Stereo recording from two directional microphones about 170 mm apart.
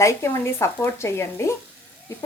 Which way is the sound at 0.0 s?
15° left (ahead or behind).